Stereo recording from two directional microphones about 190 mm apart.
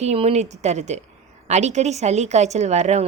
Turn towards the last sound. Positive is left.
turn(degrees=-35)  # may be behind; listen again after turning